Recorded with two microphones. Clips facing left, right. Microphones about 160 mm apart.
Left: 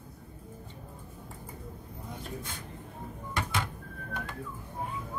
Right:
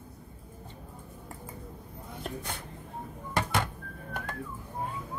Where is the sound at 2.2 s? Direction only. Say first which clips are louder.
Right 6 dB; 65° right (ahead or behind).